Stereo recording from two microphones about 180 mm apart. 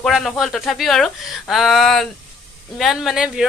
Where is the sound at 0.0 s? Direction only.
Centre (ahead or behind).